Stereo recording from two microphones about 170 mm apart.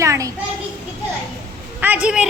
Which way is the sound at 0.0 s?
15° right (ahead or behind).